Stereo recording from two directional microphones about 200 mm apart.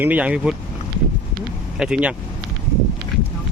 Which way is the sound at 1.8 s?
5° right (ahead or behind).